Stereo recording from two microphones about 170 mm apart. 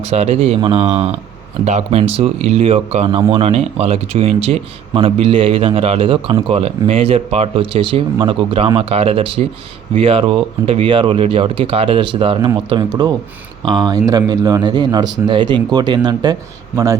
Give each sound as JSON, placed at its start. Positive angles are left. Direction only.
{"t": 0.0, "sound": "speech", "side_deg": -40}